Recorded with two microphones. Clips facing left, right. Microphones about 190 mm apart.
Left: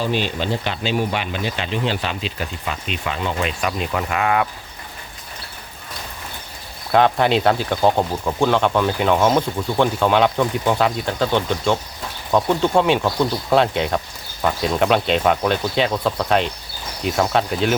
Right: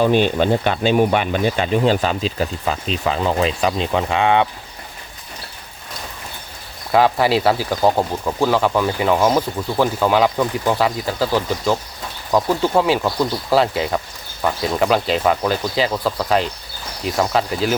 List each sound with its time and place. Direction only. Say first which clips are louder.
0.0 s speech: right 7 dB; 50° right (ahead or behind); by 4.4 s 25° right (ahead or behind)
6.9 s speech: right 1 dB; 5° right (ahead or behind)